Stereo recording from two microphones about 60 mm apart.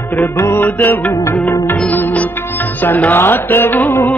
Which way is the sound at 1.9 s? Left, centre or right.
Left.